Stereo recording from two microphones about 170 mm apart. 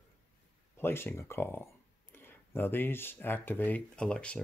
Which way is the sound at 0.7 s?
15° left (ahead or behind).